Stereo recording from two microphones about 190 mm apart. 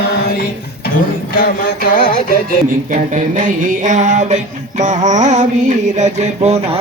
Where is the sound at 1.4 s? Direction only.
50° left (ahead or behind).